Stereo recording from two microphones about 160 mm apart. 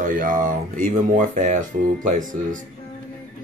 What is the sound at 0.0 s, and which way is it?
Speech, 55° right (ahead or behind).